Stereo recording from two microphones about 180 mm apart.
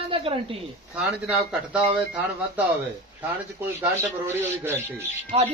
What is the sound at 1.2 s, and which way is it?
Speech, 5° right (ahead or behind).